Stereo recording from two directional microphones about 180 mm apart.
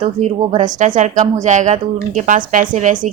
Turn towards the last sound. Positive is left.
turn(degrees=-45)  # may be behind; listen again after turning